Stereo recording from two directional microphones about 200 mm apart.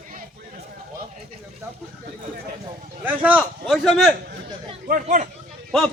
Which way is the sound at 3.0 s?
5° right (ahead or behind).